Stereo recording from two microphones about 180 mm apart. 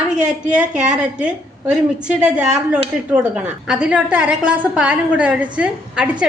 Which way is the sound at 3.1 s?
5° right (ahead or behind).